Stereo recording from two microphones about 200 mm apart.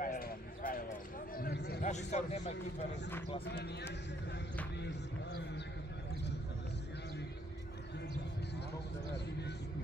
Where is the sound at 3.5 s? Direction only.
55° left (ahead or behind).